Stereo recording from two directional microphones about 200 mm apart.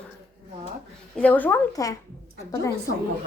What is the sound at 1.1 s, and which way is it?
A woman's voice, 5° left (ahead or behind).